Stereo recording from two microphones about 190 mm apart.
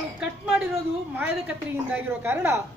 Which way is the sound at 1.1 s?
10° right (ahead or behind).